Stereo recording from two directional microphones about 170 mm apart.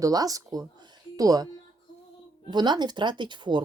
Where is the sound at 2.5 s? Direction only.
25° right (ahead or behind).